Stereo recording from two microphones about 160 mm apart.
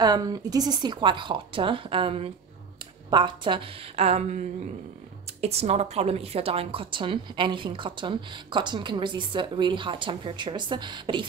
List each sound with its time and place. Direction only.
0.0 s a woman's voice: 25° right (ahead or behind)